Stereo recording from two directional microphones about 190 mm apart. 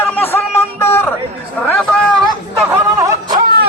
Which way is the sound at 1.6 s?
5° left (ahead or behind).